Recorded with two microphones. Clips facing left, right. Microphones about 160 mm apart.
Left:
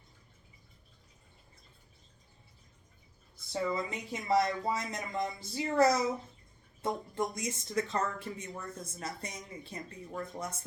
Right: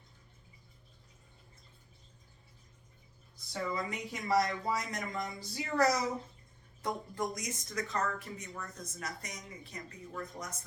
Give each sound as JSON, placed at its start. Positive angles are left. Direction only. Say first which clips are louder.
{"t": 3.5, "sound": "speech", "louder": "left 3 dB", "side_deg": 25}